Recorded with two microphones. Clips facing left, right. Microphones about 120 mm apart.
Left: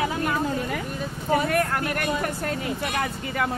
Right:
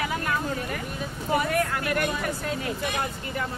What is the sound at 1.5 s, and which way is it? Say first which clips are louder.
Speech: left 1 dB; 55° left (ahead or behind).